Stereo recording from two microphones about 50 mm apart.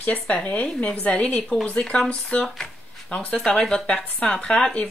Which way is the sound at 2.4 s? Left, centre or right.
Centre.